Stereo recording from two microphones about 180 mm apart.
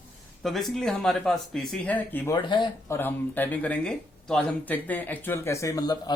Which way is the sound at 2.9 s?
10° left (ahead or behind).